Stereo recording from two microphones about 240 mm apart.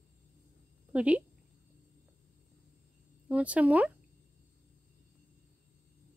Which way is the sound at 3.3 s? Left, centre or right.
Centre.